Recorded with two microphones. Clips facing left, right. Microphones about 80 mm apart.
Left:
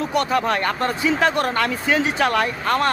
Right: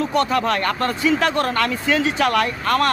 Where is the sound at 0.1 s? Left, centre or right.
Centre.